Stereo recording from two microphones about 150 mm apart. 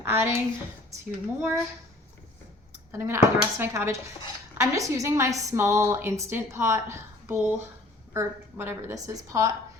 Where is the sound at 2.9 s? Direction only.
15° right (ahead or behind).